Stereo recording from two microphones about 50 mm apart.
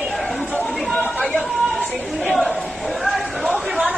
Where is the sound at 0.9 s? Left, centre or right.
Left.